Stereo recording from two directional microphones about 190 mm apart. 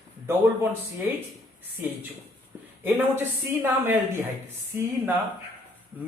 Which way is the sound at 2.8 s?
10° right (ahead or behind).